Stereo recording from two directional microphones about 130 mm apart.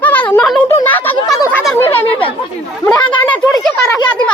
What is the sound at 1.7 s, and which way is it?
Chatter, 15° left (ahead or behind).